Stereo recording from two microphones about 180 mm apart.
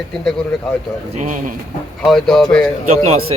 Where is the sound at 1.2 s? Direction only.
45° right (ahead or behind).